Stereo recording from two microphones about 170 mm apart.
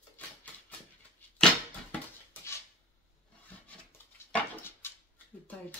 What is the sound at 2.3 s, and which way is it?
Dishes, 15° left (ahead or behind).